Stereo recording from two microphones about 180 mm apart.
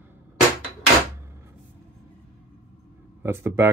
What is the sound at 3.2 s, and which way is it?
Speech, 15° right (ahead or behind).